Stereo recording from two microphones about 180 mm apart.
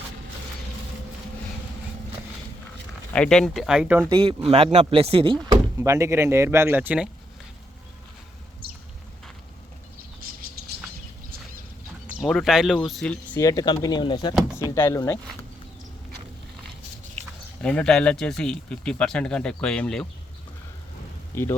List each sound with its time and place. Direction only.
3.1 s speech: 5° left (ahead or behind)
4.1 s speech: 30° right (ahead or behind)
5.8 s speech: 15° right (ahead or behind)
12.2 s speech: centre (ahead or behind)
13.3 s speech: 20° left (ahead or behind)
17.6 s speech: 5° left (ahead or behind)
21.3 s speech: 15° left (ahead or behind)